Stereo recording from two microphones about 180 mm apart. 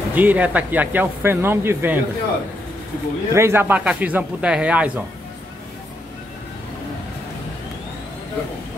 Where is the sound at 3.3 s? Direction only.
15° right (ahead or behind).